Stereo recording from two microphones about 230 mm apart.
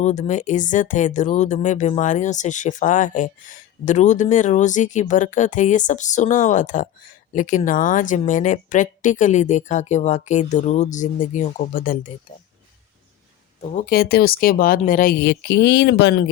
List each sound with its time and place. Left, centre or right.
0.0 s speech: left
13.7 s speech: left